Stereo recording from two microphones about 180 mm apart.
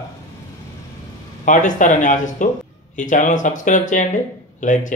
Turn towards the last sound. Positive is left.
turn(degrees=45)  # may be behind; listen again after turning